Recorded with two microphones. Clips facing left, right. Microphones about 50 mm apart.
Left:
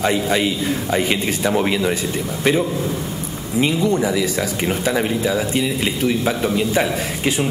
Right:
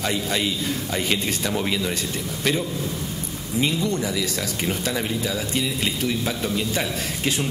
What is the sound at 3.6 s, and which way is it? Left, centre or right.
A man's voice, centre.